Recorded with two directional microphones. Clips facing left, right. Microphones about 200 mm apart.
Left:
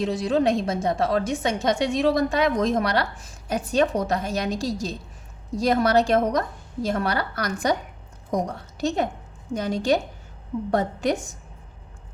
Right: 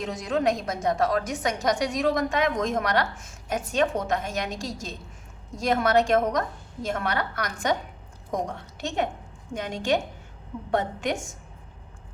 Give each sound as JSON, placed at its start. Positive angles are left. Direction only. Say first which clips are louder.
{"t": 0.0, "sound": "a woman's voice", "louder": "left 4 dB", "side_deg": 30}